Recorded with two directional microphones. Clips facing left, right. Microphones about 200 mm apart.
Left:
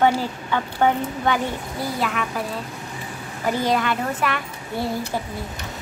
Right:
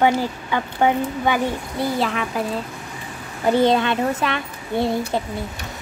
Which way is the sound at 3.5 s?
25° right (ahead or behind).